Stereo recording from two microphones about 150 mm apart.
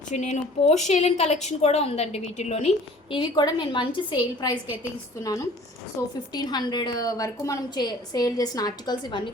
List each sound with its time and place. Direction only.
0.1 s a woman's voice: 50° left (ahead or behind); by 4.5 s 30° left (ahead or behind)
6.3 s a woman's voice: 25° left (ahead or behind)